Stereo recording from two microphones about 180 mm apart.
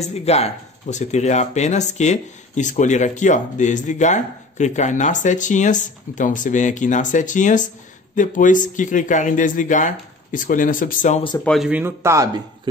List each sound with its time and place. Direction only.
0.0 s speech: 35° left (ahead or behind)
11.3 s speech: 5° left (ahead or behind)
11.8 s a man's voice: 15° right (ahead or behind)